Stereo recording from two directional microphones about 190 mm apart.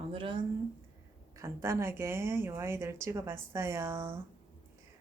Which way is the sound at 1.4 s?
15° right (ahead or behind).